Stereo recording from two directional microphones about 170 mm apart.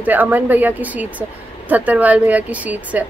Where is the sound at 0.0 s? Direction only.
10° right (ahead or behind).